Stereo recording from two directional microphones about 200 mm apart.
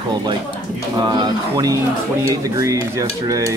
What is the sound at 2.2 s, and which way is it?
Dishes, 15° right (ahead or behind).